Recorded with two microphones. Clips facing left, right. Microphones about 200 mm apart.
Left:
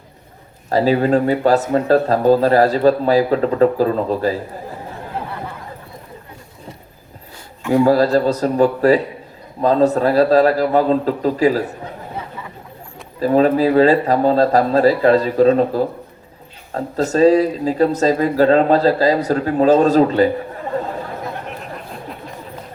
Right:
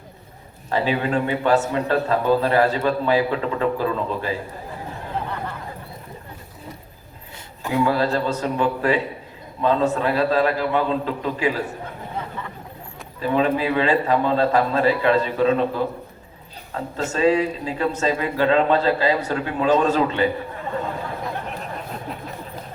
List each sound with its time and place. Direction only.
0.7 s a man's voice: 40° left (ahead or behind)
7.7 s a man's voice: 40° left (ahead or behind)
13.1 s a man's voice: 40° left (ahead or behind)